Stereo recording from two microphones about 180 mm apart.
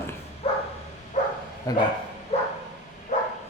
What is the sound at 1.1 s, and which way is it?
Bow-wow, 45° left (ahead or behind).